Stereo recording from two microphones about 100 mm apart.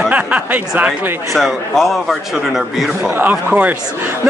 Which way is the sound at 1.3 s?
Centre (ahead or behind).